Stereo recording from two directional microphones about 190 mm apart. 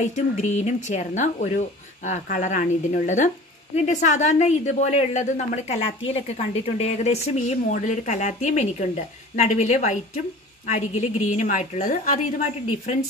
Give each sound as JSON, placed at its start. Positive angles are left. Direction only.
{"t": 0.1, "sound": "a woman's voice", "side_deg": 40}